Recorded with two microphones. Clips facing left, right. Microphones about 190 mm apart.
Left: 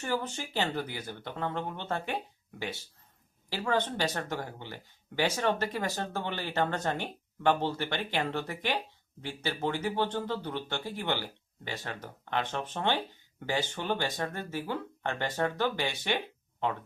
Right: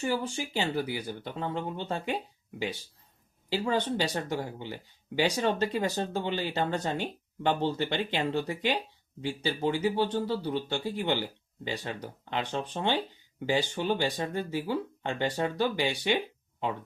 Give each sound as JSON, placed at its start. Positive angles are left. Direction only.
{"t": 0.0, "sound": "speech", "side_deg": -10}